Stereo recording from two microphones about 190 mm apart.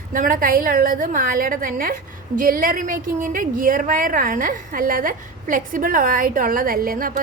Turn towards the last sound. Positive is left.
turn(degrees=-50)  # may be behind; listen again after turning